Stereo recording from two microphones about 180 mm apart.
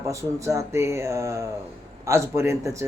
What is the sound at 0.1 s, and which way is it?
Speech, 15° right (ahead or behind).